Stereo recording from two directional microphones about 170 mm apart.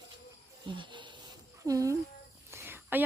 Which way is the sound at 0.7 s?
30° right (ahead or behind).